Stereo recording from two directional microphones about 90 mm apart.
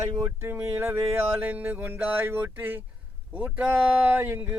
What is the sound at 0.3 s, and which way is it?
Speech, 25° right (ahead or behind).